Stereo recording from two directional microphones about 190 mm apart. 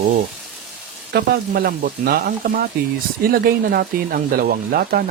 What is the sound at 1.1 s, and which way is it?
Speech, 60° right (ahead or behind).